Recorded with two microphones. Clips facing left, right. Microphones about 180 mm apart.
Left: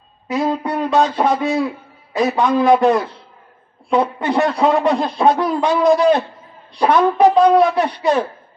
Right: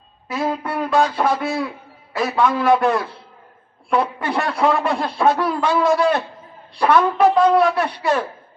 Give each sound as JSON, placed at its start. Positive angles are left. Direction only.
{"t": 0.3, "sound": "speech", "side_deg": 20}
{"t": 2.1, "sound": "wind instrument", "side_deg": 15}
{"t": 3.8, "sound": "a man's voice", "side_deg": 20}
{"t": 6.7, "sound": "wind instrument", "side_deg": 15}